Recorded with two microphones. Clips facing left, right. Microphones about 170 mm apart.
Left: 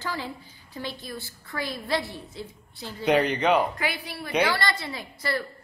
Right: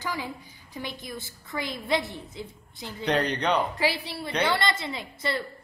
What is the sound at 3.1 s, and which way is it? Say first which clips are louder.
Speech: left 4 dB; 5° left (ahead or behind).